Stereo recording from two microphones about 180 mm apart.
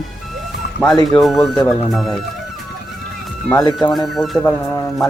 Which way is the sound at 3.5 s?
20° left (ahead or behind).